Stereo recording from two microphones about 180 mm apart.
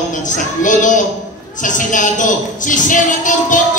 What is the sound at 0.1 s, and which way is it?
Speech, 45° left (ahead or behind).